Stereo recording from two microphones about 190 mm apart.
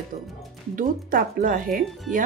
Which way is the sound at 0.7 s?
45° right (ahead or behind).